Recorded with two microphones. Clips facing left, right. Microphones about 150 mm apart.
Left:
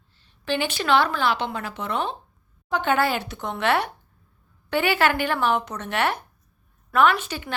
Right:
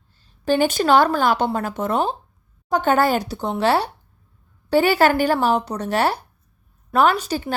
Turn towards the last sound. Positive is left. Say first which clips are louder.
# right 2 dB
turn(degrees=-40)  # may be behind; listen again after turning